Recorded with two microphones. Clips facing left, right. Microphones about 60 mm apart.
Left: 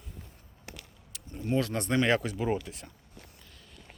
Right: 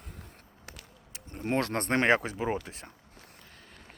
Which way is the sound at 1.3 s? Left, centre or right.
Right.